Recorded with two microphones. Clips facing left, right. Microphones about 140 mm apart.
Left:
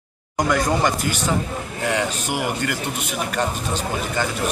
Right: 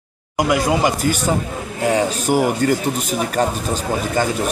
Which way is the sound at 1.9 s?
40° right (ahead or behind).